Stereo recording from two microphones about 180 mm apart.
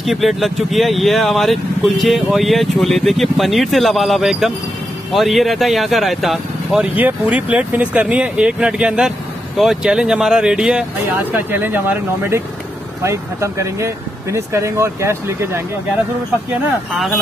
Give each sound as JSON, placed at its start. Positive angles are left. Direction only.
{"t": 0.0, "sound": "speech", "side_deg": 0}